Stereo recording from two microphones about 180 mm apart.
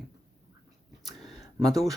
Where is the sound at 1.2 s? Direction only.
Centre (ahead or behind).